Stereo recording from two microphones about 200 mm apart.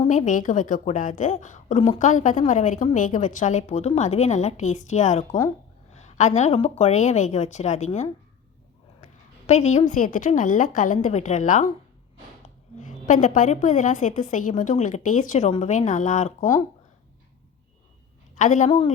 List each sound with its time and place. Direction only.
0.1 s a woman's voice: 40° left (ahead or behind)
9.5 s a woman's voice: 35° left (ahead or behind)
12.7 s a woman's voice: 40° left (ahead or behind)
18.3 s a woman's voice: 40° left (ahead or behind)